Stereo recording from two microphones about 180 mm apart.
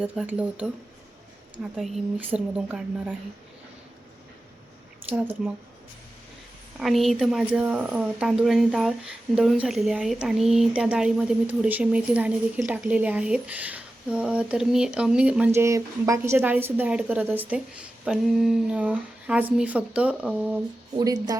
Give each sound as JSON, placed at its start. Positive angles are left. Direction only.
{"t": 0.0, "sound": "a woman's voice", "side_deg": -5}
{"t": 1.7, "sound": "a woman's voice", "side_deg": -5}
{"t": 6.7, "sound": "speech", "side_deg": 0}
{"t": 21.0, "sound": "a woman's voice", "side_deg": -20}